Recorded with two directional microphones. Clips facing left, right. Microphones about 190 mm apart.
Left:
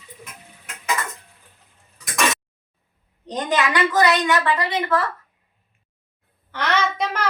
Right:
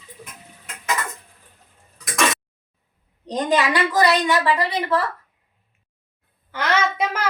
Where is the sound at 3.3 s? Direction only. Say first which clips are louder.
Right 2 dB; 35° right (ahead or behind).